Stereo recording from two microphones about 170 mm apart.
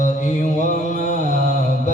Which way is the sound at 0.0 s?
45° left (ahead or behind).